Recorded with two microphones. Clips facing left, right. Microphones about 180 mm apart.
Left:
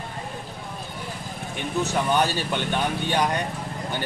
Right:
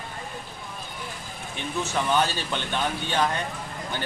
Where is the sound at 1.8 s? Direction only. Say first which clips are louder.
Left 1 dB; 15° left (ahead or behind).